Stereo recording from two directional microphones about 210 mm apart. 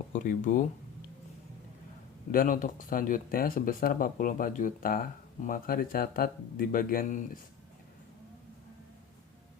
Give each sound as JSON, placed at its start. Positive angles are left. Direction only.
{"t": 0.1, "sound": "speech", "side_deg": 40}
{"t": 2.3, "sound": "speech", "side_deg": 40}